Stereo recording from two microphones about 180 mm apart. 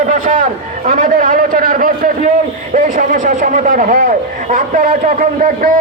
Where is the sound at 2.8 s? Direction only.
45° right (ahead or behind).